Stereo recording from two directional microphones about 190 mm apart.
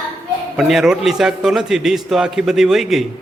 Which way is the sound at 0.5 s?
Centre (ahead or behind).